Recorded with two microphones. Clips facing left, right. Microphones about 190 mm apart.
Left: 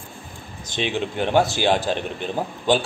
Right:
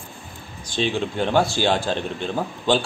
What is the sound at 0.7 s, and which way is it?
A man's voice, 15° left (ahead or behind).